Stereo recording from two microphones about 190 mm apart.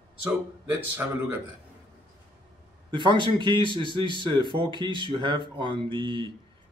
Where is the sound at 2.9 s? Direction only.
25° right (ahead or behind).